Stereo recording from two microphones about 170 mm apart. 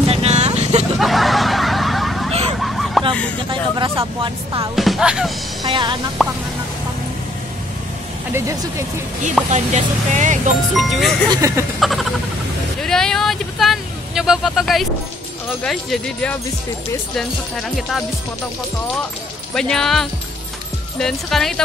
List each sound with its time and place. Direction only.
0.0 s vehicle: 35° right (ahead or behind)
0.9 s hubbub: centre (ahead or behind)
2.6 s a sound: centre (ahead or behind)
3.4 s speech: 30° right (ahead or behind)
4.7 s speech: centre (ahead or behind)
5.6 s speech: 25° right (ahead or behind)
6.2 s speech: centre (ahead or behind)
8.3 s speech: 15° right (ahead or behind)
9.5 s speech: 45° right (ahead or behind)
10.7 s speech: centre (ahead or behind)
11.2 s speech: 20° right (ahead or behind)
11.8 s a sound: centre (ahead or behind)
12.8 s speech: 5° left (ahead or behind)
19.5 s speech: 5° left (ahead or behind)